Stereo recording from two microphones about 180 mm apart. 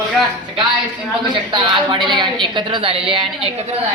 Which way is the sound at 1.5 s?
25° right (ahead or behind).